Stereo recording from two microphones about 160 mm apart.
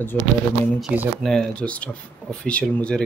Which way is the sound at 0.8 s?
5° right (ahead or behind).